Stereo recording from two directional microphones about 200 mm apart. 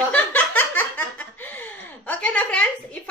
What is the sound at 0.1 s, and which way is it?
Laughter, 10° left (ahead or behind).